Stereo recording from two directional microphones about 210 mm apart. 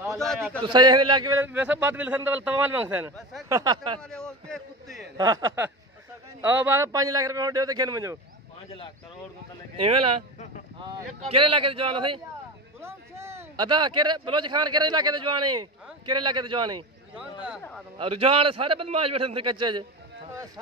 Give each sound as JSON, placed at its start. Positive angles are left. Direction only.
{"t": 0.1, "sound": "a man's voice", "side_deg": 0}
{"t": 0.7, "sound": "a man's voice", "side_deg": -20}
{"t": 4.1, "sound": "a man's voice", "side_deg": 5}
{"t": 5.1, "sound": "a man's voice", "side_deg": -15}
{"t": 10.8, "sound": "a man's voice", "side_deg": -25}
{"t": 12.8, "sound": "a man's voice", "side_deg": -10}
{"t": 17.1, "sound": "speech", "side_deg": -5}
{"t": 17.9, "sound": "a man's voice", "side_deg": -25}